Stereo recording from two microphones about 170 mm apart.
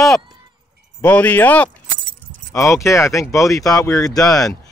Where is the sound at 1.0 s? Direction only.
10° left (ahead or behind).